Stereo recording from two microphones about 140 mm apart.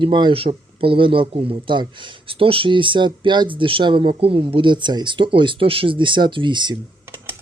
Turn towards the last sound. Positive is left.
turn(degrees=-35)  # may be behind; listen again after turning